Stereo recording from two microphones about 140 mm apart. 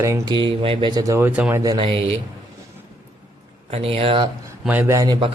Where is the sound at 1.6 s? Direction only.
35° right (ahead or behind).